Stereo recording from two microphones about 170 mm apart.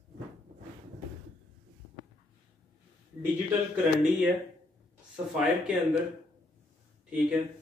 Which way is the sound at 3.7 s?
5° right (ahead or behind).